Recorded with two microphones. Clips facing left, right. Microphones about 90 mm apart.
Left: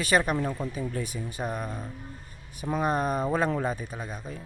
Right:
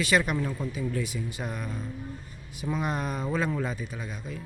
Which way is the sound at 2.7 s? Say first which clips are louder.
Left 5 dB; 40° left (ahead or behind).